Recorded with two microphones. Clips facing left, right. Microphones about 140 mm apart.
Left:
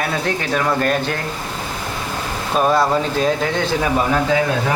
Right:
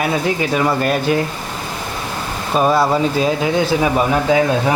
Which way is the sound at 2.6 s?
5° right (ahead or behind).